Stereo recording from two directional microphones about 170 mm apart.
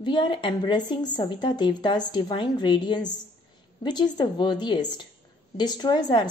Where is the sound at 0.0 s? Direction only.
25° left (ahead or behind).